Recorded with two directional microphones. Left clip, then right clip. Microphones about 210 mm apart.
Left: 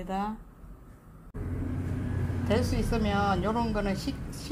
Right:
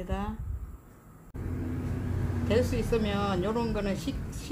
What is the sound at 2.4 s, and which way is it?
Speech, 20° left (ahead or behind).